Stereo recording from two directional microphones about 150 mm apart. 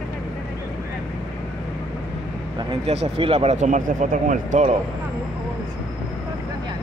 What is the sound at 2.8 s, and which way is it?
Speech, 40° right (ahead or behind).